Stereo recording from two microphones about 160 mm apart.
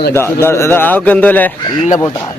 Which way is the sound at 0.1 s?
15° left (ahead or behind).